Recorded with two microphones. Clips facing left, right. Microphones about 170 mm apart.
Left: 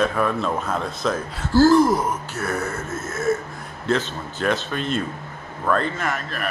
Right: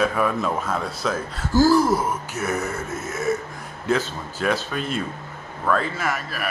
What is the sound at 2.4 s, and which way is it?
Speech, 20° right (ahead or behind).